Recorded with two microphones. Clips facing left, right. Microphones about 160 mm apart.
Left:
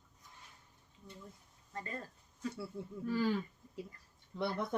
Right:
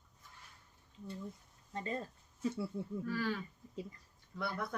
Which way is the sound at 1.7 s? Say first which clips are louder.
Right 4 dB; 25° right (ahead or behind).